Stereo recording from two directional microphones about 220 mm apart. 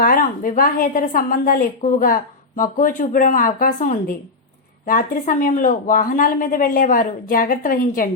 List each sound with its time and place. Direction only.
0.0 s speech: 40° left (ahead or behind)